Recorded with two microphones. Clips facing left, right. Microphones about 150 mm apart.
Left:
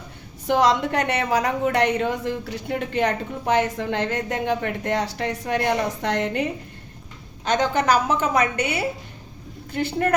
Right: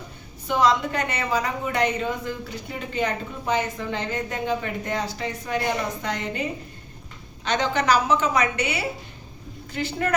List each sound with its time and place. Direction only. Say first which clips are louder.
0.4 s a woman's voice: left 2 dB; 75° left (ahead or behind)
7.4 s a woman's voice: left 2 dB; 50° left (ahead or behind)